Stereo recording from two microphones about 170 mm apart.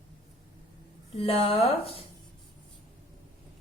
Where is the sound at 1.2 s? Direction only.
35° left (ahead or behind).